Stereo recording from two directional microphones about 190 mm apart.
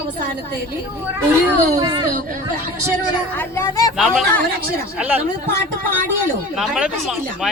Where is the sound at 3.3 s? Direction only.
10° left (ahead or behind).